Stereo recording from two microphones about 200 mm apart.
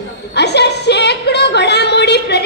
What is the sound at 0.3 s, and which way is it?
Music, 55° left (ahead or behind).